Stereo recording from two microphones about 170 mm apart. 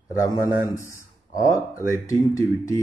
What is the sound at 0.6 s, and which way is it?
Speech, 20° left (ahead or behind).